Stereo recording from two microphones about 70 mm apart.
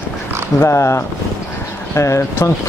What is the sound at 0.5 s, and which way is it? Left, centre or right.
Speech, left.